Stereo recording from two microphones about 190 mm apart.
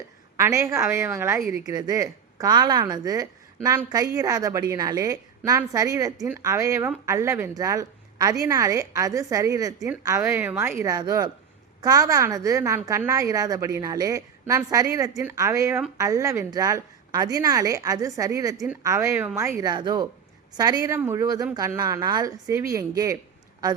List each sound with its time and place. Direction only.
0.3 s speech: 15° right (ahead or behind)